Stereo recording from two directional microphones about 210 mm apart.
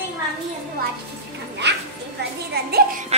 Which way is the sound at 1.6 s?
55° right (ahead or behind).